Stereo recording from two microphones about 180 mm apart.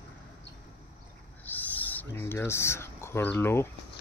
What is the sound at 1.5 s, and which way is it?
Owl, 10° left (ahead or behind).